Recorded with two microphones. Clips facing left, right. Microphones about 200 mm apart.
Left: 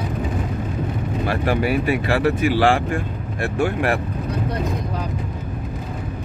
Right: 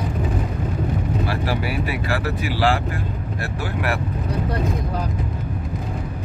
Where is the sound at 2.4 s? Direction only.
50° left (ahead or behind).